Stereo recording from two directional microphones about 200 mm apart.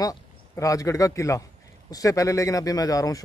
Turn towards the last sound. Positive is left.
turn(degrees=15)  # may be behind; listen again after turning